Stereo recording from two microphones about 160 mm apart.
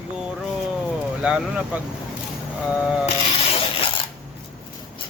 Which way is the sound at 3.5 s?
35° left (ahead or behind).